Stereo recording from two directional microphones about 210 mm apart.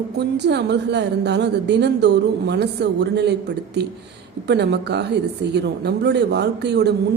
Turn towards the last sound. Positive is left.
turn(degrees=-55)  # may be behind; listen again after turning